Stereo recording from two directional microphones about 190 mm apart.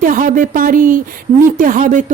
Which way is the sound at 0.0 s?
45° right (ahead or behind).